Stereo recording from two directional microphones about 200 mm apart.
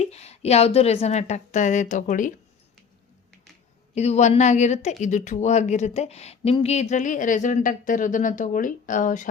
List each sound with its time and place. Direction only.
0.0 s speech: 30° left (ahead or behind)
3.9 s speech: 35° left (ahead or behind)